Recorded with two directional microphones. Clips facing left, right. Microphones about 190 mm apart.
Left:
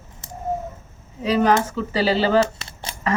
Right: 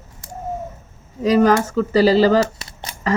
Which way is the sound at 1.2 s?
40° right (ahead or behind).